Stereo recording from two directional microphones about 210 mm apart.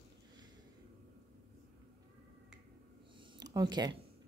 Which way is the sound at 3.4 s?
20° right (ahead or behind).